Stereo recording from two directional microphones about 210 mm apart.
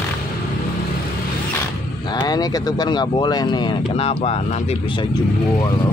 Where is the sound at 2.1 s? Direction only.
20° left (ahead or behind).